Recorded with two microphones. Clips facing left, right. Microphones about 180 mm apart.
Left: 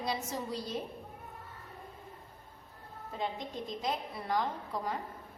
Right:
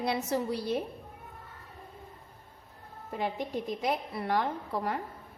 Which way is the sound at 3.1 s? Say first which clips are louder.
Right 5 dB; 65° right (ahead or behind).